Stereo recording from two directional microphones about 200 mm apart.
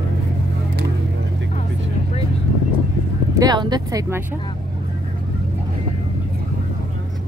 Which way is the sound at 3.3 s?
20° right (ahead or behind).